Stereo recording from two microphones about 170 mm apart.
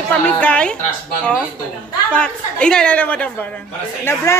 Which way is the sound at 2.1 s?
5° left (ahead or behind).